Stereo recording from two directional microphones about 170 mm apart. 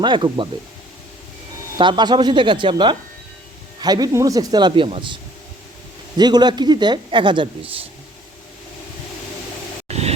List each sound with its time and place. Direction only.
0.0 s speech: 30° right (ahead or behind)
1.8 s speech: 25° right (ahead or behind)
9.9 s a sound: 40° right (ahead or behind)